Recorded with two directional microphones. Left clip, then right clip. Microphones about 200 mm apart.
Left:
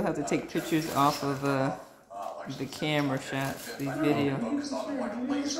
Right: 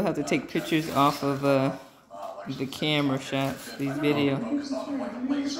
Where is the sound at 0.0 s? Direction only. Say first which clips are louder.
Right 3 dB; 20° right (ahead or behind).